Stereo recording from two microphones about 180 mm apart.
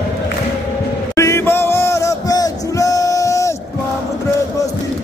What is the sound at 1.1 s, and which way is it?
Music, 15° left (ahead or behind).